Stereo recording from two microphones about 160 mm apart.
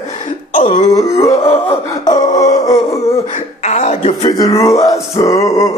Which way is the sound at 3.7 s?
45° left (ahead or behind).